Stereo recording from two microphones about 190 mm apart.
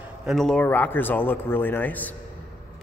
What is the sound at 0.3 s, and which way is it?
A man's voice, centre (ahead or behind).